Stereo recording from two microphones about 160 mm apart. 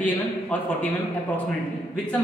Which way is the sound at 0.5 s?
10° left (ahead or behind).